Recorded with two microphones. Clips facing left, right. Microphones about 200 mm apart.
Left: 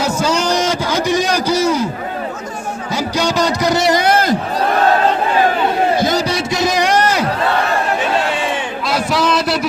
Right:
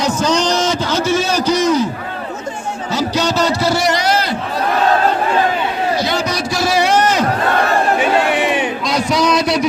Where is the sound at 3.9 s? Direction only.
50° left (ahead or behind).